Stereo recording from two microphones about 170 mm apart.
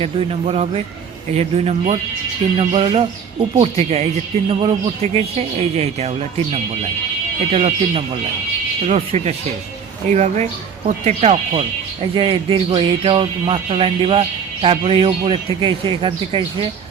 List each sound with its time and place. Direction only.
0.0 s speech: 35° right (ahead or behind)